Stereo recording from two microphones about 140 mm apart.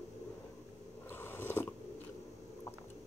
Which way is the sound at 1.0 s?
15° left (ahead or behind).